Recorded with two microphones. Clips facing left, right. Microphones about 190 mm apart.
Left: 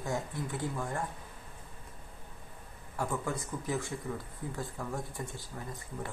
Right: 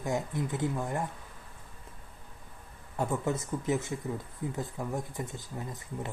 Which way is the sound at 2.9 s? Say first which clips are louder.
Right 4 dB; 25° right (ahead or behind).